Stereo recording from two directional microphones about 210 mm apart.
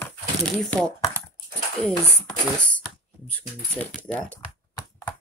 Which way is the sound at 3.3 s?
5° left (ahead or behind).